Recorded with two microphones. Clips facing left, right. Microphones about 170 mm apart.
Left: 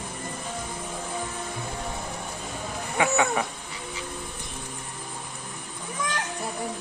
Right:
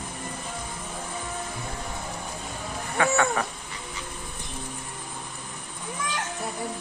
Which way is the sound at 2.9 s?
15° left (ahead or behind).